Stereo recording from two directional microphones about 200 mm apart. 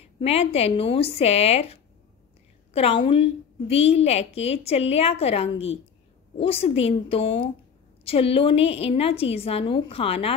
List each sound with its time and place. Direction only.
0.0 s a woman's voice: 30° left (ahead or behind)